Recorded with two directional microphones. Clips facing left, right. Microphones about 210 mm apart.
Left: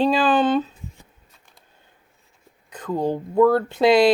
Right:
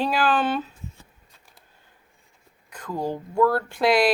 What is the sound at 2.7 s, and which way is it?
Speech, 20° left (ahead or behind).